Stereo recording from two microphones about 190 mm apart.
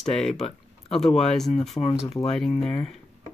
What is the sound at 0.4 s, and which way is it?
Speech, centre (ahead or behind).